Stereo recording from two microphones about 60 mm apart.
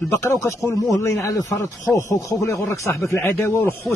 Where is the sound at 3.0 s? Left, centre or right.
Left.